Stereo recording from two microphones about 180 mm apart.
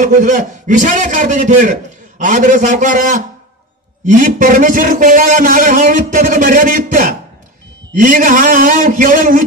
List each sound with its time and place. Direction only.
0.0 s a man's voice: 45° right (ahead or behind)